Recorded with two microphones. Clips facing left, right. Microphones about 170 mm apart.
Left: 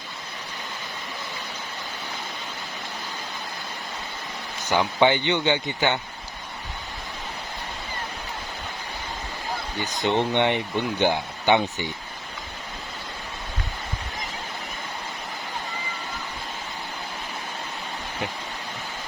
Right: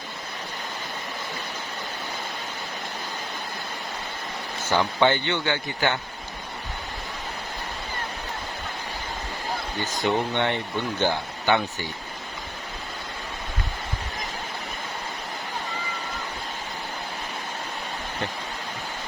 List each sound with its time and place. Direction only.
4.7 s speech: 15° left (ahead or behind)
10.0 s speech: 20° left (ahead or behind)